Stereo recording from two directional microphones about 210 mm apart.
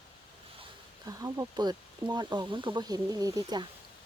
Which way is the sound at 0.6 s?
15° right (ahead or behind).